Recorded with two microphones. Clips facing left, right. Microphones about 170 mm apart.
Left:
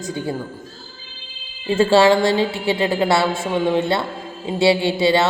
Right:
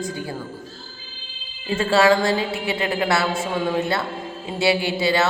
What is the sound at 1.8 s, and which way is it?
Speech, 30° left (ahead or behind).